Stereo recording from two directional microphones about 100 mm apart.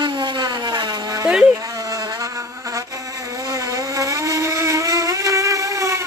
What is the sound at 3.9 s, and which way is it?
Motorboat, 35° right (ahead or behind).